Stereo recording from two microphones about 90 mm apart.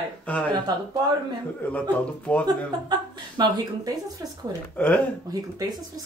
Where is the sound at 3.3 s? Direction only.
50° right (ahead or behind).